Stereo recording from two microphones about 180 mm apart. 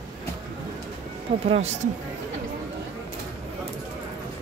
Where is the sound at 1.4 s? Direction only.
35° right (ahead or behind).